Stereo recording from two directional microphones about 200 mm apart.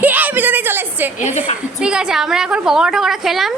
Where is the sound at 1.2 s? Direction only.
35° left (ahead or behind).